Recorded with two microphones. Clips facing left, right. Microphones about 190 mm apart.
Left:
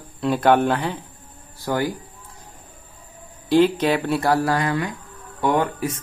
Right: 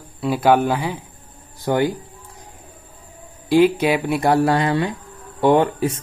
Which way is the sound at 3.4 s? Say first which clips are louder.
Right 2 dB; 10° right (ahead or behind).